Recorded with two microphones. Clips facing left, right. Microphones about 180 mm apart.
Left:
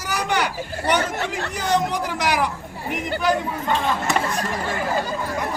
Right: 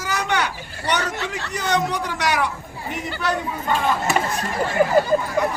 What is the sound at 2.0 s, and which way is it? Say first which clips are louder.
Speech: even; 10° left (ahead or behind).